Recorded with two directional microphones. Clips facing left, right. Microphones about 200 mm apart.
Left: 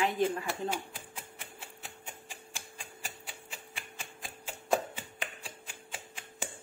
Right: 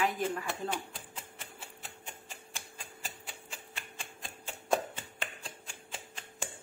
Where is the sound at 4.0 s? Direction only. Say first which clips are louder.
Left 1 dB; centre (ahead or behind).